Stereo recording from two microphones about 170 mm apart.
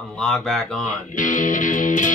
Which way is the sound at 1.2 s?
50° left (ahead or behind).